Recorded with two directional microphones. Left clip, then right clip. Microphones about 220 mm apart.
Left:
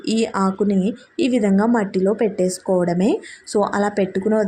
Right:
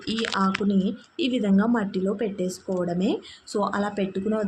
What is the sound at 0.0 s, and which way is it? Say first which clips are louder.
Speech: left 5 dB; 30° left (ahead or behind).